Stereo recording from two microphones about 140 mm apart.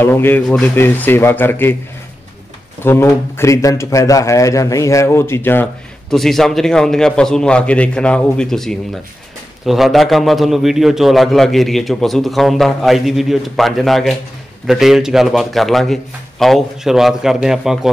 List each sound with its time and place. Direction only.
0.0 s a man's voice: 15° left (ahead or behind)
2.8 s speech: 15° left (ahead or behind)
6.0 s a man's voice: centre (ahead or behind)